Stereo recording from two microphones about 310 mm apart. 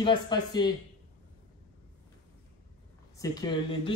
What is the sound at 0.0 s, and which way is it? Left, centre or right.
Speech, centre.